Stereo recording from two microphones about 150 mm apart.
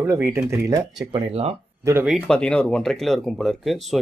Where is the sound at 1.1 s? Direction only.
40° right (ahead or behind).